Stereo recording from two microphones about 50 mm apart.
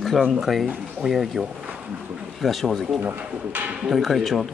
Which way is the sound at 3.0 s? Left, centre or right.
Right.